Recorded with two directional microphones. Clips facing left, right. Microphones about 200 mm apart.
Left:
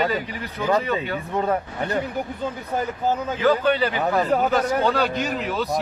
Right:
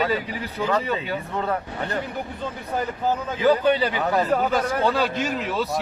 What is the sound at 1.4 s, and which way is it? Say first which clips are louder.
Speech: left 5 dB; 15° left (ahead or behind).